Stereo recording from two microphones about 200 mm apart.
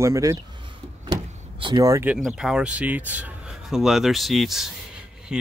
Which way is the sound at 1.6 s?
20° right (ahead or behind).